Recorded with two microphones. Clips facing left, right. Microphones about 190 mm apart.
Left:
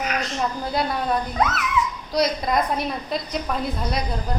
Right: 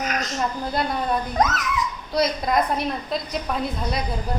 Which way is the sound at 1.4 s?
40° right (ahead or behind).